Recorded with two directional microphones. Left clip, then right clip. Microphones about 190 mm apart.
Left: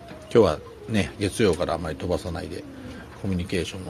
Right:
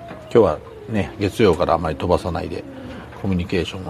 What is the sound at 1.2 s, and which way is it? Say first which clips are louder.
Speech: right 7 dB; centre (ahead or behind).